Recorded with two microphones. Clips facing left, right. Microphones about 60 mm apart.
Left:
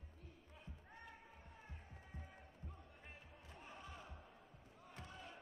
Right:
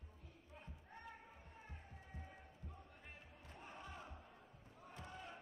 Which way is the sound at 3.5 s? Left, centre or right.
Right.